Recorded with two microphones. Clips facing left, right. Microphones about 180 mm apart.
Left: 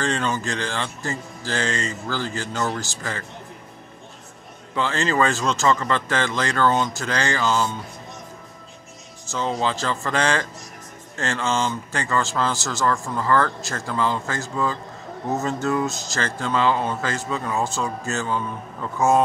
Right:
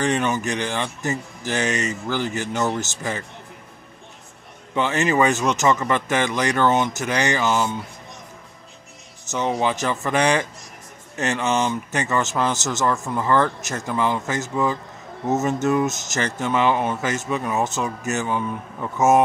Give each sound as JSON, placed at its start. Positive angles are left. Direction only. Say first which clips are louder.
{"t": 0.0, "sound": "speech", "louder": "right 3 dB", "side_deg": -20}
{"t": 4.7, "sound": "speech", "louder": "right 2 dB", "side_deg": -20}
{"t": 9.2, "sound": "speech", "louder": "right 2 dB", "side_deg": -20}